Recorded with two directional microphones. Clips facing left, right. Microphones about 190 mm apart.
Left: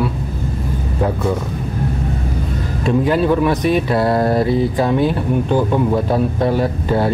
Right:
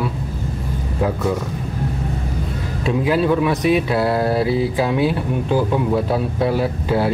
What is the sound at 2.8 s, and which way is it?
Speech, centre (ahead or behind).